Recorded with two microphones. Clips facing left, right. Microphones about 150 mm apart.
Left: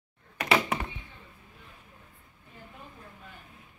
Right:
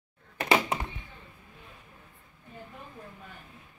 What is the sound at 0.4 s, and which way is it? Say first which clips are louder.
Thunk: right 1 dB; 20° right (ahead or behind).